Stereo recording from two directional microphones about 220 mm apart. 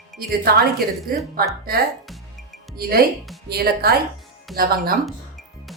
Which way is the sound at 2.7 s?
45° right (ahead or behind).